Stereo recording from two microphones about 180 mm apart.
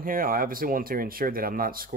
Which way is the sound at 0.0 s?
50° right (ahead or behind).